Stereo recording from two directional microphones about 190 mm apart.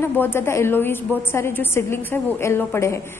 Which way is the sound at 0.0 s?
10° left (ahead or behind).